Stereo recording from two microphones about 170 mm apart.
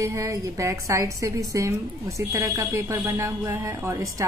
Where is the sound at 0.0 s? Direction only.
20° right (ahead or behind).